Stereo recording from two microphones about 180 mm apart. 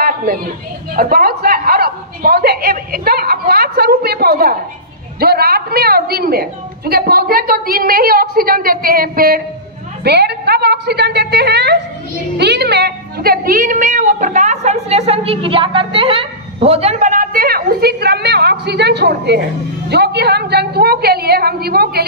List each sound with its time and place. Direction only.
0.0 s a sound: 50° right (ahead or behind)
0.9 s a woman's voice: 55° right (ahead or behind)
10.0 s a woman's voice: 65° right (ahead or behind)